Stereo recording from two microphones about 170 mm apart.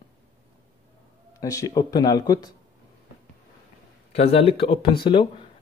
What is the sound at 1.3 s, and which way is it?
Speech, 20° left (ahead or behind).